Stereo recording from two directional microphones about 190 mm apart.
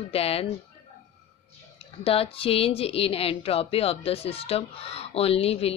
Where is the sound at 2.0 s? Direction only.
30° left (ahead or behind).